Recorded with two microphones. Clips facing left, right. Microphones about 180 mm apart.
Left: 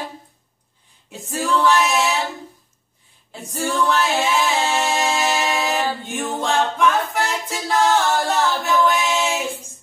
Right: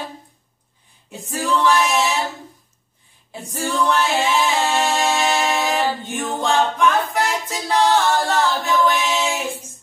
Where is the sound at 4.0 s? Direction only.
Centre (ahead or behind).